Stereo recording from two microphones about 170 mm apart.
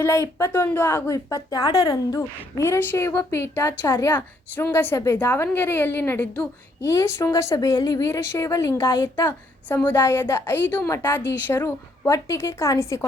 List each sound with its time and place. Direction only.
0.0 s speech: 15° left (ahead or behind)